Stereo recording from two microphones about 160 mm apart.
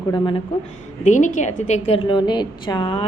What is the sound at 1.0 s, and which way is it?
A woman's voice, 50° left (ahead or behind).